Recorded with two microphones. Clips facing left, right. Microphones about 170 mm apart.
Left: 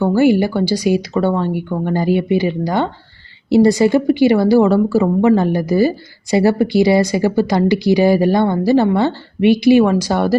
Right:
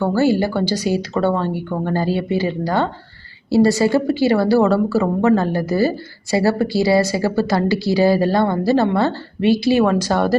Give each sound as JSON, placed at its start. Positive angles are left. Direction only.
{"t": 0.0, "sound": "speech", "side_deg": 15}